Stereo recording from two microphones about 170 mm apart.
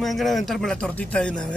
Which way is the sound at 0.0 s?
Centre (ahead or behind).